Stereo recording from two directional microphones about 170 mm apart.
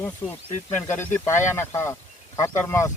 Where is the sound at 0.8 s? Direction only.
15° left (ahead or behind).